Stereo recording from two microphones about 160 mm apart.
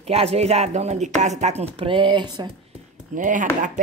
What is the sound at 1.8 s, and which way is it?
Speech, 35° right (ahead or behind).